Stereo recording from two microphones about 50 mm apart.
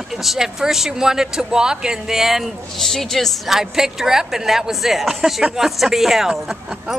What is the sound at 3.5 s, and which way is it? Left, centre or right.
Speech, centre.